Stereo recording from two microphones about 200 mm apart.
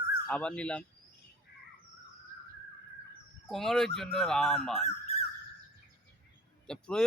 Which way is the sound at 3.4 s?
Centre (ahead or behind).